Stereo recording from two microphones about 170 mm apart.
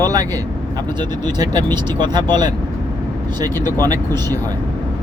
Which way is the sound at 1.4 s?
25° right (ahead or behind).